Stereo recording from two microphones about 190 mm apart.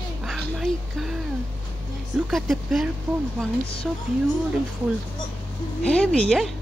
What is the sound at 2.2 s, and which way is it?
A woman's voice, centre (ahead or behind).